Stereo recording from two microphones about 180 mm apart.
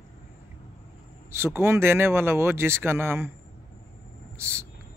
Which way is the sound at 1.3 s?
15° right (ahead or behind).